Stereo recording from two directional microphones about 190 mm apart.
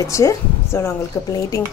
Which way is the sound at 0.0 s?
15° left (ahead or behind).